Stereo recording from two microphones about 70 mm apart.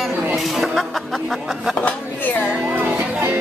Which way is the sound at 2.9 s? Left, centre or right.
Right.